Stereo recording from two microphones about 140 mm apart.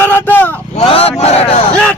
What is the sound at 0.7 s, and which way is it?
Speech, 45° left (ahead or behind).